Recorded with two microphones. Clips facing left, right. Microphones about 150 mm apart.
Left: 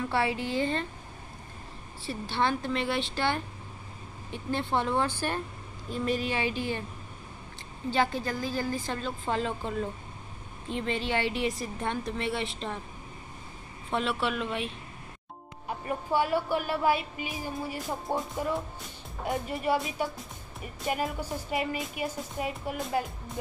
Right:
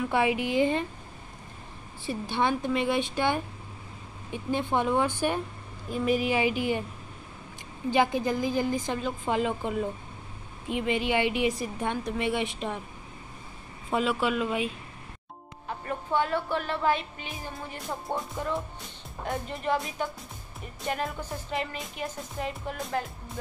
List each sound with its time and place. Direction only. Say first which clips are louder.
0.1 s a woman's voice: right 4 dB; 15° right (ahead or behind)
2.0 s a woman's voice: right 2 dB; 15° right (ahead or behind)
7.9 s a woman's voice: right 4 dB; 15° right (ahead or behind)
13.8 s speech: right 3 dB; 5° right (ahead or behind)
15.8 s speech: even; 10° left (ahead or behind)